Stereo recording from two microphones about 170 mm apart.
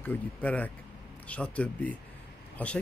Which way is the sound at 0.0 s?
10° left (ahead or behind).